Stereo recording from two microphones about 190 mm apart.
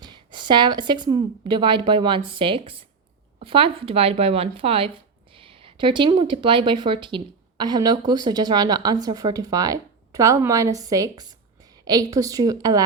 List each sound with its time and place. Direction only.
0.0 s a woman's voice: 25° right (ahead or behind)